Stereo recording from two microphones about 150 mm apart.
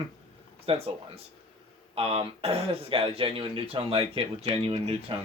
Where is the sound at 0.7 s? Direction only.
40° right (ahead or behind).